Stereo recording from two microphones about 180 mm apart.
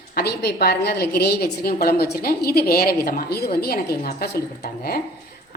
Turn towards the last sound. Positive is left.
turn(degrees=55)  # may be behind; listen again after turning